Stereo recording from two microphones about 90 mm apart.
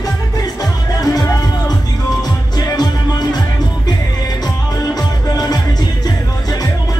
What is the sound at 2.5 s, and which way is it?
Music, 50° left (ahead or behind).